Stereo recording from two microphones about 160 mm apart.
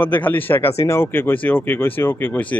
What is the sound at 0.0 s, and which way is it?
Speech, 10° left (ahead or behind).